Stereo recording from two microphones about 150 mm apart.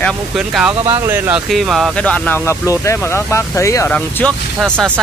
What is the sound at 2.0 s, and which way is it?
Speech, 10° left (ahead or behind).